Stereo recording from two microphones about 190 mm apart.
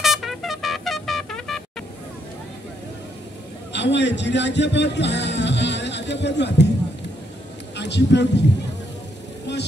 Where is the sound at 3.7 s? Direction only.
65° left (ahead or behind).